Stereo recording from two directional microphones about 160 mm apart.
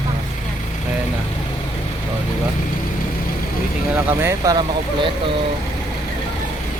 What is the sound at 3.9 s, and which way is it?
Speech, 15° right (ahead or behind).